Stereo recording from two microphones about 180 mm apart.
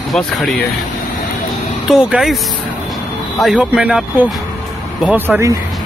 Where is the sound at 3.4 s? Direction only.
5° right (ahead or behind).